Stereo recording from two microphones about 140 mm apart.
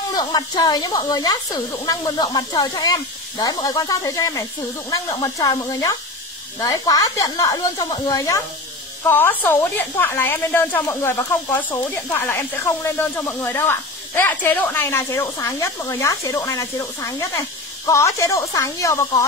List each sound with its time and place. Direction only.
0.1 s speech: 30° left (ahead or behind)
9.0 s speech: 15° left (ahead or behind)